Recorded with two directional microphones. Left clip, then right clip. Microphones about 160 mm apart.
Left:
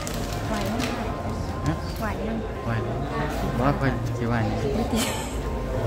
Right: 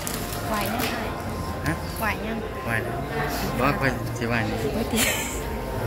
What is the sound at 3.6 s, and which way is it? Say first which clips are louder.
Speech: right 2 dB; 15° left (ahead or behind).